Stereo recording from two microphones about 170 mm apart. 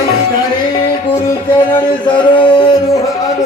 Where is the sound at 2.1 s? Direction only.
30° left (ahead or behind).